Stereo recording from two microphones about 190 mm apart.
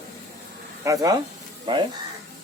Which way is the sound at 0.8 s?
20° right (ahead or behind).